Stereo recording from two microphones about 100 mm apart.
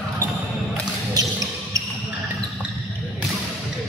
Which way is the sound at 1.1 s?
35° right (ahead or behind).